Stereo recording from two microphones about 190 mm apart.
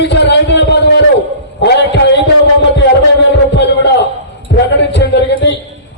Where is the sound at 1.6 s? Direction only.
65° left (ahead or behind).